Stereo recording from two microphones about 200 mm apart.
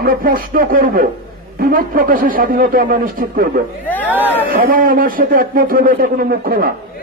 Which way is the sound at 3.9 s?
10° left (ahead or behind).